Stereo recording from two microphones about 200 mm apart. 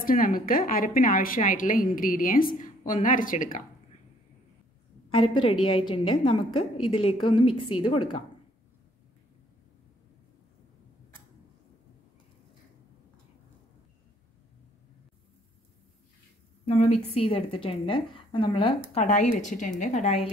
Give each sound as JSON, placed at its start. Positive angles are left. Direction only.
{"t": 0.0, "sound": "a woman's voice", "side_deg": 45}
{"t": 5.1, "sound": "a woman's voice", "side_deg": 25}
{"t": 16.6, "sound": "a woman's voice", "side_deg": 30}